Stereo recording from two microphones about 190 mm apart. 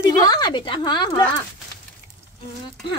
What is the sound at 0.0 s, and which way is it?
A woman's voice, 20° left (ahead or behind).